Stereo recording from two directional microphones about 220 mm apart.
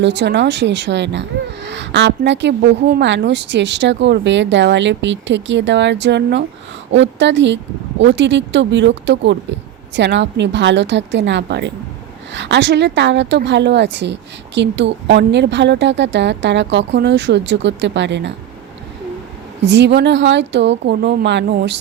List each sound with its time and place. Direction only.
0.0 s a woman's voice: 50° right (ahead or behind)
19.6 s a woman's voice: 55° right (ahead or behind)